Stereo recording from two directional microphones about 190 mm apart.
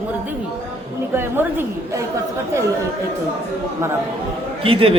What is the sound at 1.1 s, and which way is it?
Speech, 10° right (ahead or behind).